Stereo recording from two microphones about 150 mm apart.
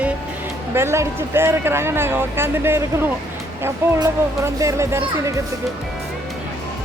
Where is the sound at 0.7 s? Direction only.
15° right (ahead or behind).